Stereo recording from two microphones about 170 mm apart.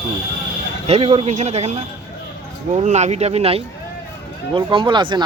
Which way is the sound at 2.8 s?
45° right (ahead or behind).